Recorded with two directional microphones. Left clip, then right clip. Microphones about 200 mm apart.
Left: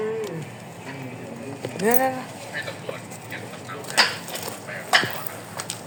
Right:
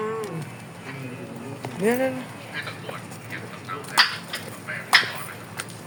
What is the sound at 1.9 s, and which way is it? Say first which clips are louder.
Speech: left 1 dB; 20° right (ahead or behind).